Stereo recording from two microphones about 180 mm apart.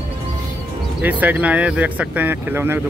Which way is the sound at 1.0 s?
10° right (ahead or behind).